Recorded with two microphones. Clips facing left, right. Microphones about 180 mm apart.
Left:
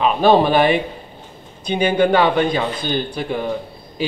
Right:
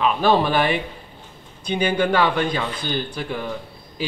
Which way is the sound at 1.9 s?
20° left (ahead or behind).